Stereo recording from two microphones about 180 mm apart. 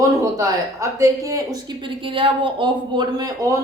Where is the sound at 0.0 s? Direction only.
15° right (ahead or behind).